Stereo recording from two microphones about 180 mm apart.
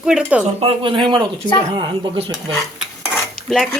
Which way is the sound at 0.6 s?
25° right (ahead or behind).